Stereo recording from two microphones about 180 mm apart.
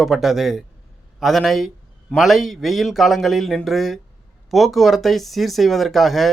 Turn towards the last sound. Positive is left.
turn(degrees=0)  # may be behind; listen again after turning